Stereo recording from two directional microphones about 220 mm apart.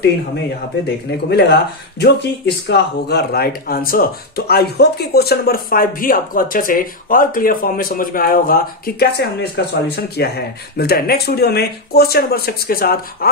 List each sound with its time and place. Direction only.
1.3 s speech: 50° left (ahead or behind)